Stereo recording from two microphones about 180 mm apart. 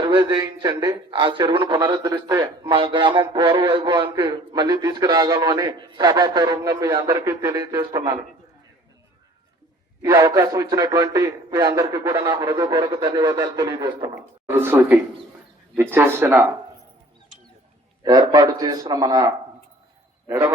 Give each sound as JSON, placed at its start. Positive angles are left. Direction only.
{"t": 0.0, "sound": "speech", "side_deg": -25}
{"t": 10.0, "sound": "speech", "side_deg": -20}
{"t": 14.4, "sound": "speech", "side_deg": -15}
{"t": 18.0, "sound": "a man's voice", "side_deg": -20}